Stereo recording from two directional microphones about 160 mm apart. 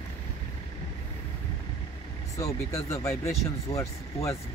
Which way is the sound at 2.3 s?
20° left (ahead or behind).